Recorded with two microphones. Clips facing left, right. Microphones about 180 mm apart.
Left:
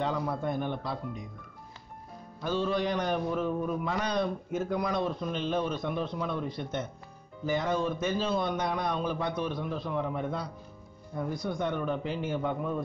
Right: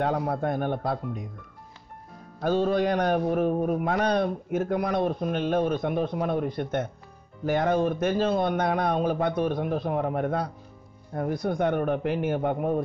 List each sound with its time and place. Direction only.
0.0 s a man's voice: 55° right (ahead or behind)
2.4 s a man's voice: 50° right (ahead or behind)